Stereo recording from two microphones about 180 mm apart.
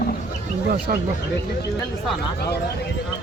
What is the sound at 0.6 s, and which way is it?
Speech, 55° right (ahead or behind).